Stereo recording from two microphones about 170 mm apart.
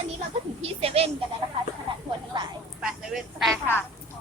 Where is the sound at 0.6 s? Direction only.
35° right (ahead or behind).